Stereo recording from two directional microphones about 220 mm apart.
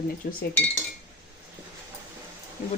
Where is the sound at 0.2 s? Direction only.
40° left (ahead or behind).